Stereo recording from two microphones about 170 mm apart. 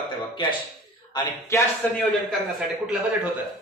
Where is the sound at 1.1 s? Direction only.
25° left (ahead or behind).